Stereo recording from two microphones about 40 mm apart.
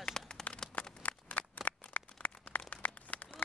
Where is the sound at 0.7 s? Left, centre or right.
Left.